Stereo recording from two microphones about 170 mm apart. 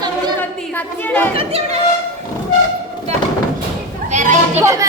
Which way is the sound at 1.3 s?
35° right (ahead or behind).